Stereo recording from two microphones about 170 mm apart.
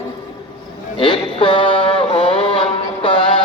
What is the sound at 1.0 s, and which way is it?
Mantra, 30° left (ahead or behind).